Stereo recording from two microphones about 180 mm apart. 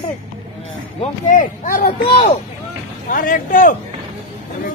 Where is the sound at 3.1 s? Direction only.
50° left (ahead or behind).